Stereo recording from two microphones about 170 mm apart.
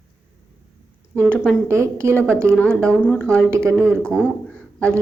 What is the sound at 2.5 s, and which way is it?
Speech, 5° left (ahead or behind).